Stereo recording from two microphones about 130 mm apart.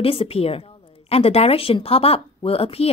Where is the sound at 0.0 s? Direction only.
45° left (ahead or behind).